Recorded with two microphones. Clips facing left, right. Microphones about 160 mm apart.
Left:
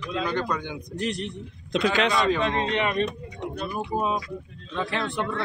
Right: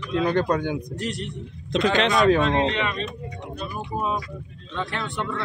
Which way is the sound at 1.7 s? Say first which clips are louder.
Right 2 dB; centre (ahead or behind).